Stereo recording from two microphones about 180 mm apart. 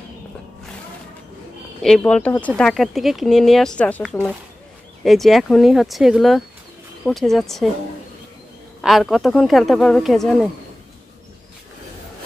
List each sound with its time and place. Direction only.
1.8 s speech: 5° left (ahead or behind)
8.8 s speech: centre (ahead or behind)